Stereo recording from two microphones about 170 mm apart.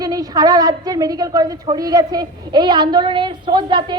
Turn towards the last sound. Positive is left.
turn(degrees=-25)  # may be behind; listen again after turning